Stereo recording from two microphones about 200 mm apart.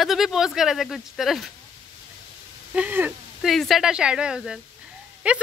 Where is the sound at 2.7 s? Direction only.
5° right (ahead or behind).